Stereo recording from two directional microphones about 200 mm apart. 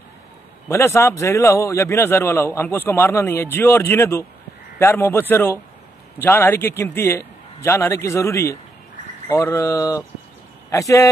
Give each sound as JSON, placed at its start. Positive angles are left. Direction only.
{"t": 0.7, "sound": "a man's voice", "side_deg": 15}